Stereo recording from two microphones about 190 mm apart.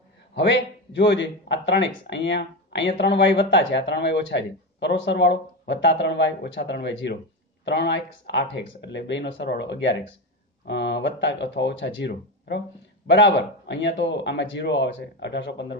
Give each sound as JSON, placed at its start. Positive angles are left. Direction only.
{"t": 0.3, "sound": "a man's voice", "side_deg": 70}